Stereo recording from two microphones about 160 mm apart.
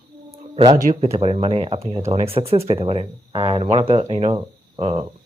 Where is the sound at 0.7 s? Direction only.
55° right (ahead or behind).